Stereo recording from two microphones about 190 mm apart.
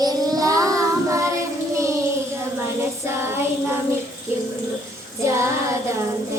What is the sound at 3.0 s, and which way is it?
Child singing, 15° right (ahead or behind).